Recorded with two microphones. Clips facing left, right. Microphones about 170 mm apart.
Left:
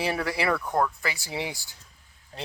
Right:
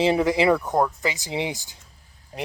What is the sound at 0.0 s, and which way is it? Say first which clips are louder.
Speech: right 8 dB; 20° right (ahead or behind).